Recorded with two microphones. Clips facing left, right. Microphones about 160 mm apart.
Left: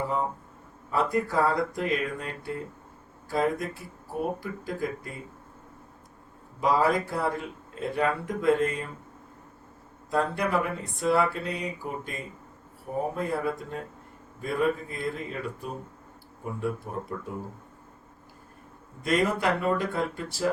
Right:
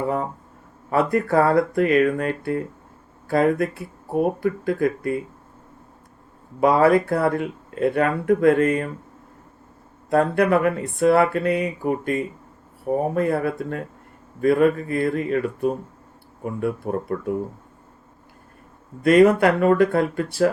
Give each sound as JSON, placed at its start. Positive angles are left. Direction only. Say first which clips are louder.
{"t": 0.9, "sound": "speech", "louder": "right 6 dB", "side_deg": -60}
{"t": 6.6, "sound": "speech", "louder": "right 8 dB", "side_deg": -65}
{"t": 10.1, "sound": "speech", "louder": "right 8 dB", "side_deg": -60}
{"t": 13.1, "sound": "speech", "louder": "right 7 dB", "side_deg": -65}
{"t": 19.0, "sound": "speech", "louder": "right 11 dB", "side_deg": -65}